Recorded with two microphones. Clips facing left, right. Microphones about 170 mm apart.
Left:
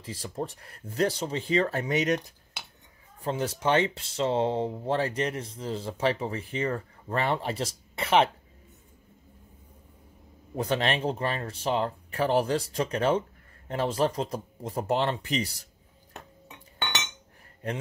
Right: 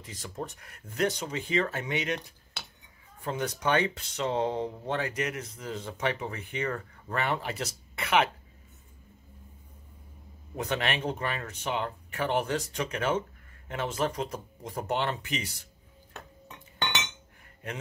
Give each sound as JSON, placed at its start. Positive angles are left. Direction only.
{"t": 0.0, "sound": "speech", "side_deg": 30}
{"t": 3.3, "sound": "speech", "side_deg": 30}
{"t": 10.5, "sound": "speech", "side_deg": 30}
{"t": 17.6, "sound": "speech", "side_deg": 30}